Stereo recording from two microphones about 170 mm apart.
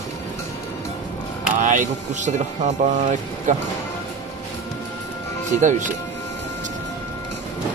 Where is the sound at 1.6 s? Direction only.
50° right (ahead or behind).